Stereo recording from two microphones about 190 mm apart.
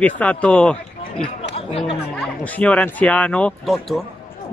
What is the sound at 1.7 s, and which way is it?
Speech, 30° left (ahead or behind).